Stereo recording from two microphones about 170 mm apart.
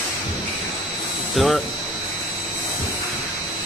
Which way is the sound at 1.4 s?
Centre (ahead or behind).